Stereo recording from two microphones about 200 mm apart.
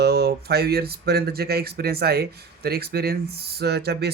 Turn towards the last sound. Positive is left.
turn(degrees=-55)  # may be behind; listen again after turning